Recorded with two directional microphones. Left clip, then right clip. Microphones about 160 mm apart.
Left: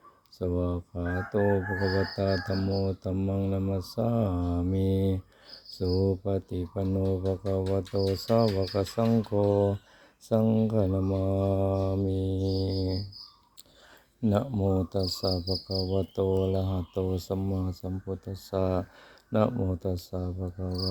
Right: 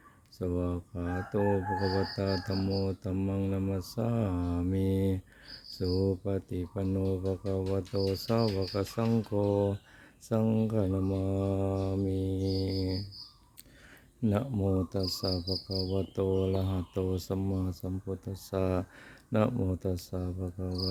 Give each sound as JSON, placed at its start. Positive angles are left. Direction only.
{"t": 0.3, "sound": "chicken", "side_deg": -10}
{"t": 14.2, "sound": "chicken", "side_deg": -10}
{"t": 19.3, "sound": "cricket", "side_deg": -20}